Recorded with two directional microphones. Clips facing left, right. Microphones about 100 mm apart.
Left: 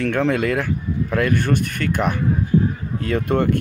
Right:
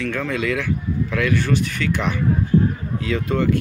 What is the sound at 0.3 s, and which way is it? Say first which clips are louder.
Speech: left 2 dB; 50° left (ahead or behind).